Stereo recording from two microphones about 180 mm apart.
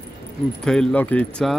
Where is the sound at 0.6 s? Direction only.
5° left (ahead or behind).